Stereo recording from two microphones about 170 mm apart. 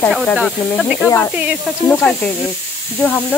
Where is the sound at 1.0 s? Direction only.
15° left (ahead or behind).